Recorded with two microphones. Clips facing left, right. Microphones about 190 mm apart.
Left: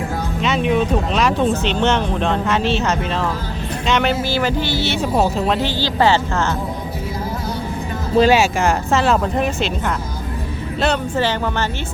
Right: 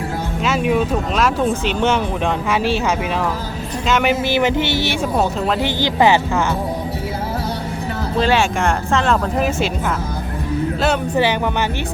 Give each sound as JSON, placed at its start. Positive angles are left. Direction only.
{"t": 0.4, "sound": "speech", "side_deg": -5}
{"t": 5.1, "sound": "speech", "side_deg": 0}
{"t": 5.6, "sound": "speech", "side_deg": -15}
{"t": 8.2, "sound": "speech", "side_deg": 10}